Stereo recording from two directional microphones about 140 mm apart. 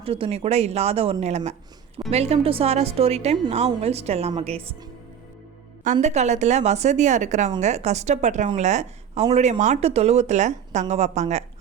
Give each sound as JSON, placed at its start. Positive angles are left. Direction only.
{"t": 0.0, "sound": "speech", "side_deg": -40}
{"t": 5.8, "sound": "a woman's voice", "side_deg": -60}